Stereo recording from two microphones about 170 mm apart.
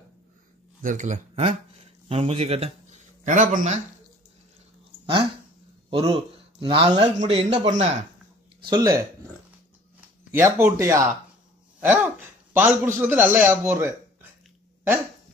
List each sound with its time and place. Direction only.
0.8 s a man's voice: 45° right (ahead or behind)
5.9 s speech: 35° right (ahead or behind)
8.6 s a man's voice: 20° right (ahead or behind)